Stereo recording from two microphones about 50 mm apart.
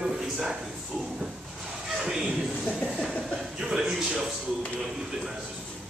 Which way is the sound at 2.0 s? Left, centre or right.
Centre.